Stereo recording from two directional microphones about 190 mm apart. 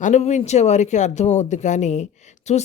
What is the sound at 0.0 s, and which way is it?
Speech, 35° left (ahead or behind).